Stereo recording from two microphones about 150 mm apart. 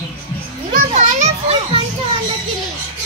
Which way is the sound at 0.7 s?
50° right (ahead or behind).